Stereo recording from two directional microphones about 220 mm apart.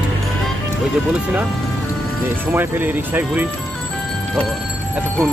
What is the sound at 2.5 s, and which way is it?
Speech, 10° right (ahead or behind).